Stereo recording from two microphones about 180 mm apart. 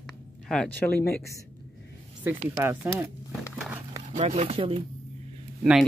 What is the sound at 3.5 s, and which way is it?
Horse, 5° right (ahead or behind).